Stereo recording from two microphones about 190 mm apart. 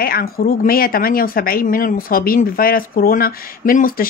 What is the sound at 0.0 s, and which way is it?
Speech, 50° left (ahead or behind).